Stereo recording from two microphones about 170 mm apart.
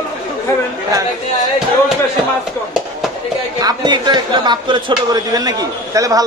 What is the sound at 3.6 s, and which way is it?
Speech, 25° right (ahead or behind).